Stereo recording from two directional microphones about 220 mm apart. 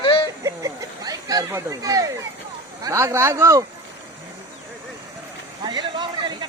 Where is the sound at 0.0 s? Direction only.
20° left (ahead or behind).